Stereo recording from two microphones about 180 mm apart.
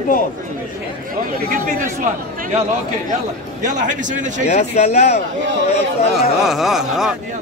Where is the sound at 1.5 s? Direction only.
45° right (ahead or behind).